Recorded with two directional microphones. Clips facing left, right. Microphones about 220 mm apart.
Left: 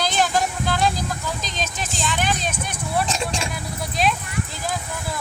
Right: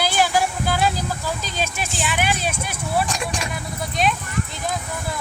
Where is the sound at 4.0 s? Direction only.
Centre (ahead or behind).